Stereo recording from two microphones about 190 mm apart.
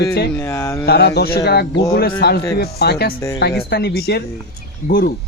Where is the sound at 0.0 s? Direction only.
60° left (ahead or behind).